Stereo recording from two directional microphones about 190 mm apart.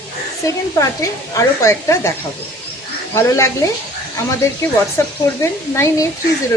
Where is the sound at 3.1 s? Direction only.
15° left (ahead or behind).